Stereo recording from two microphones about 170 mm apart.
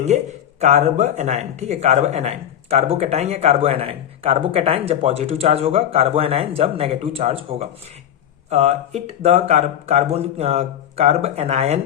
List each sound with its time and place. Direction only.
0.0 s speech: 45° right (ahead or behind)